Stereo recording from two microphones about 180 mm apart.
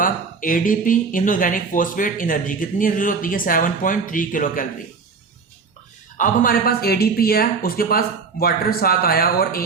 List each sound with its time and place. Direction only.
0.0 s speech: 50° left (ahead or behind)
6.1 s speech: 50° left (ahead or behind)